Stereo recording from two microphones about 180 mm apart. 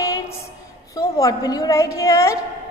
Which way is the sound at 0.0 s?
15° left (ahead or behind).